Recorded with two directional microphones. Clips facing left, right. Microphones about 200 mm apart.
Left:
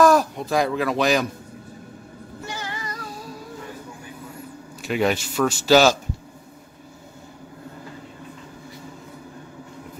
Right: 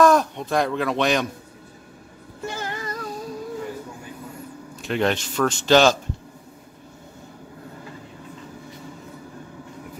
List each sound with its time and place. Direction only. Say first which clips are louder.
0.0 s speech: even; 5° left (ahead or behind)
2.4 s music: right 4 dB; 45° right (ahead or behind)
4.8 s speech: left 1 dB; 5° left (ahead or behind)